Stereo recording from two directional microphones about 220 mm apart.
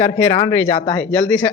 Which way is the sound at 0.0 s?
25° left (ahead or behind).